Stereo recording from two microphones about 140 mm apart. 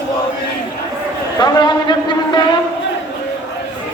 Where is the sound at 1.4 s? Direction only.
30° left (ahead or behind).